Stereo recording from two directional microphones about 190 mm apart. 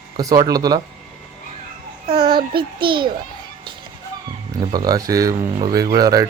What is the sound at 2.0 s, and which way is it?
Speech, 30° right (ahead or behind).